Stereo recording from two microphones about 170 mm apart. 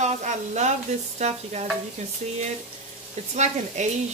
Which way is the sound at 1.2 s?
40° right (ahead or behind).